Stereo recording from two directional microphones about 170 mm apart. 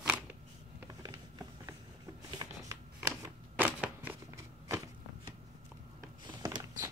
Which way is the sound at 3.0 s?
10° right (ahead or behind).